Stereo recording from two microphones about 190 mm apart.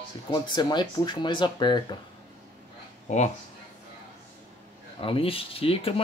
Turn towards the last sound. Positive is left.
turn(degrees=30)  # may be behind; listen again after turning